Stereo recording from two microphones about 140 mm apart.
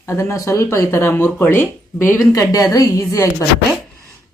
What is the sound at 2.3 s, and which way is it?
Speech, 25° left (ahead or behind).